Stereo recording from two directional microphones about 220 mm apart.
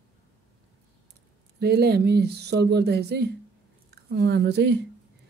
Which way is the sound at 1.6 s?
45° right (ahead or behind).